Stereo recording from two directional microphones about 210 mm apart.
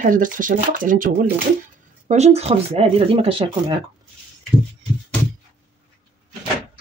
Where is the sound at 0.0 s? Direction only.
40° right (ahead or behind).